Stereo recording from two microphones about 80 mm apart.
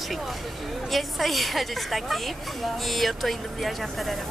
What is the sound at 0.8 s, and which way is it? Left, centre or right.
A woman's voice, centre.